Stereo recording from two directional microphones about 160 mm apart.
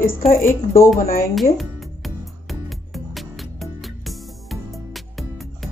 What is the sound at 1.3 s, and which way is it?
Music, centre (ahead or behind).